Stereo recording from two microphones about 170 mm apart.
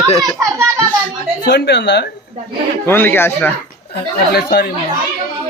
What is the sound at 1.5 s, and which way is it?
Speech, 90° left.